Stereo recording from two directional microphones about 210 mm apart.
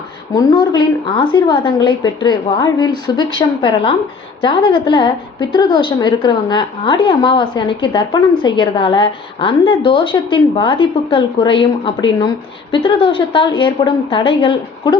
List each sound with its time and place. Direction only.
0.3 s a woman's voice: 25° left (ahead or behind)